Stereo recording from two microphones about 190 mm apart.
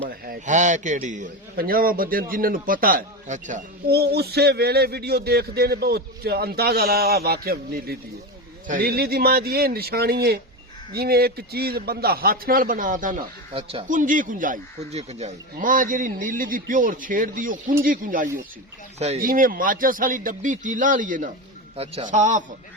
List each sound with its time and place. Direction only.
0.1 s speech: 45° right (ahead or behind)
3.8 s speech: 55° right (ahead or behind)
13.5 s speech: 30° right (ahead or behind)
13.8 s a man's voice: 45° right (ahead or behind)